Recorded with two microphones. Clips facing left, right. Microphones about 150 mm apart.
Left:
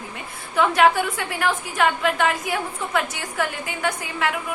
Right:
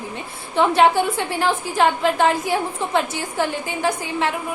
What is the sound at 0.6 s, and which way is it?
A woman's voice, 30° right (ahead or behind).